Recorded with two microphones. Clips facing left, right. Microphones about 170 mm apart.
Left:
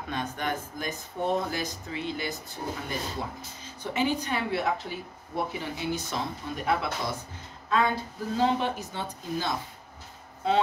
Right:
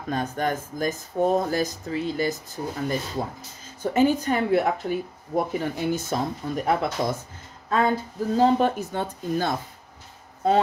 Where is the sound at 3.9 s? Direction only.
45° right (ahead or behind).